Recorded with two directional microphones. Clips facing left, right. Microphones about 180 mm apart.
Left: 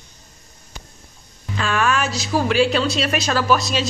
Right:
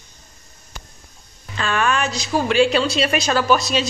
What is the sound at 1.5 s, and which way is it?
Speech, 5° left (ahead or behind).